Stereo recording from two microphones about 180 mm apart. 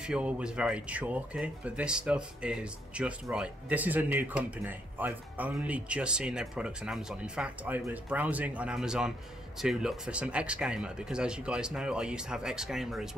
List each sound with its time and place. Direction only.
0.0 s speech: 5° right (ahead or behind)